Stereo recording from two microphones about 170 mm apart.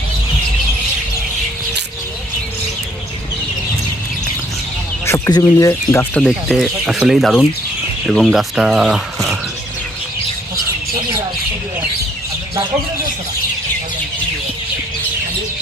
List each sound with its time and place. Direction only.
5.0 s speech: 15° left (ahead or behind)
6.1 s speech: 5° left (ahead or behind)